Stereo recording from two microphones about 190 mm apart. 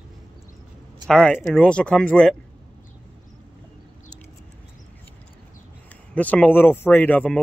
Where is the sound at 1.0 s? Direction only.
5° left (ahead or behind).